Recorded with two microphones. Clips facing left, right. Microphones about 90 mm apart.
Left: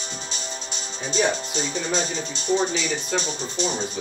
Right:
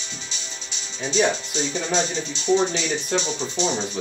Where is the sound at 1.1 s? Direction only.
45° left (ahead or behind).